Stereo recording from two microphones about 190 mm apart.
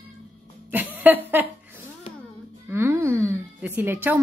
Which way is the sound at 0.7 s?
10° right (ahead or behind).